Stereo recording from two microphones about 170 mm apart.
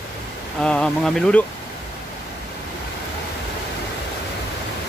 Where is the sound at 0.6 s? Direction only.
5° left (ahead or behind).